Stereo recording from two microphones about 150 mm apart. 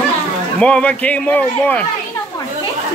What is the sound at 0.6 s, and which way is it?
Speech, 10° left (ahead or behind).